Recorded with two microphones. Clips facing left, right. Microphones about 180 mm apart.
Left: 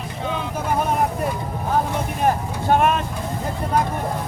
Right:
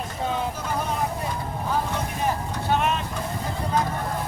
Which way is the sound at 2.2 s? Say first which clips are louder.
Left 7 dB; 50° left (ahead or behind).